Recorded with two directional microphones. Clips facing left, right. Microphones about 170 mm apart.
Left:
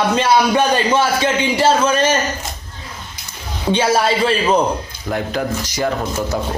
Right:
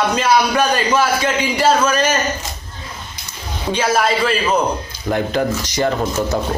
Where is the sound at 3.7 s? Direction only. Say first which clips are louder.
Left 1 dB; 30° left (ahead or behind).